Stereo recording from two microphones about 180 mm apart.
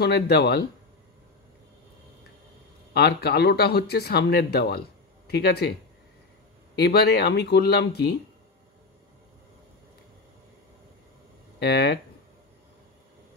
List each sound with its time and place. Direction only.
0.0 s speech: 65° left (ahead or behind)
2.9 s speech: 65° left (ahead or behind)
11.6 s speech: 65° left (ahead or behind)